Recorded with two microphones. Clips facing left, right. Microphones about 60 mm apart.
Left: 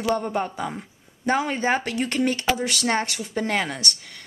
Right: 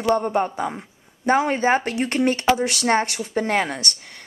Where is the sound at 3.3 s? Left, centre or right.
Centre.